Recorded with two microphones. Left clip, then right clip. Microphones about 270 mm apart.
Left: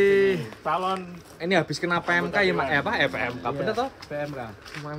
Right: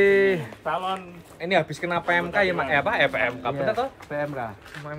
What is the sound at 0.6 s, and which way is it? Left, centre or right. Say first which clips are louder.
Speech: left 1 dB; left.